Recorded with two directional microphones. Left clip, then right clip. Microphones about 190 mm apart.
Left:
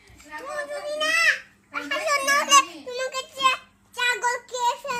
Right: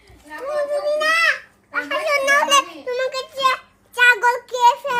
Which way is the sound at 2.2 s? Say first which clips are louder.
Right 3 dB; 15° left (ahead or behind).